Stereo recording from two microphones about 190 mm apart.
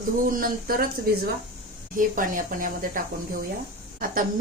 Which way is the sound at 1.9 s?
45° right (ahead or behind).